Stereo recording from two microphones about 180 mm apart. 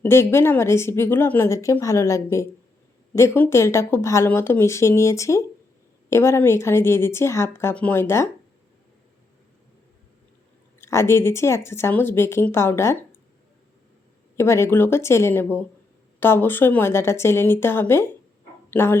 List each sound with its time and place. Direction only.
0.0 s a woman's voice: 15° left (ahead or behind)
10.8 s a woman's voice: 15° left (ahead or behind)
14.3 s a woman's voice: 15° left (ahead or behind)